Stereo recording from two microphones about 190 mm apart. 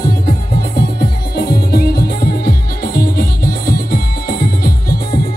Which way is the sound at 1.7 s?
55° left (ahead or behind).